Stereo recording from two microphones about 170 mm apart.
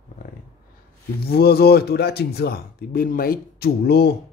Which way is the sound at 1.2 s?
65° left (ahead or behind).